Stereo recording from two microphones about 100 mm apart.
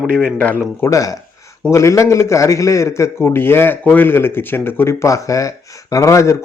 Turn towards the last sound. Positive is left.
turn(degrees=30)  # may be behind; listen again after turning